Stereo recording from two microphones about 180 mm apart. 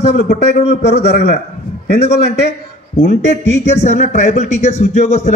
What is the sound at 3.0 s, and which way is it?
Speech, 75° left (ahead or behind).